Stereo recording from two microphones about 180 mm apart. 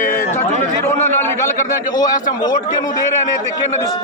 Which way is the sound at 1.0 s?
15° left (ahead or behind).